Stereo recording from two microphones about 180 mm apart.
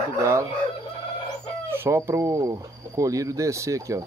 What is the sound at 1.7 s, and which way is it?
Speech, 15° right (ahead or behind).